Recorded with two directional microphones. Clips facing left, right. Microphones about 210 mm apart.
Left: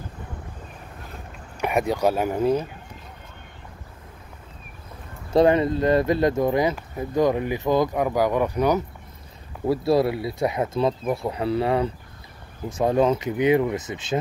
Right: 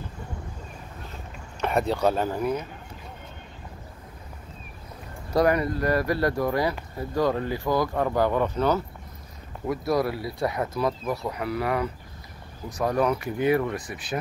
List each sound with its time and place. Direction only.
1.6 s speech: 15° left (ahead or behind)
2.3 s speech: 30° left (ahead or behind)
5.3 s speech: 25° left (ahead or behind)
9.7 s speech: 25° left (ahead or behind)